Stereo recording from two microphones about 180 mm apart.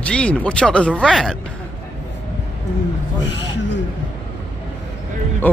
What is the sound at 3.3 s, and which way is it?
Speech, 80° left.